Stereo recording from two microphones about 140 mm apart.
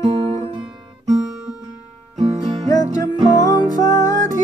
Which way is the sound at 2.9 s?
25° left (ahead or behind).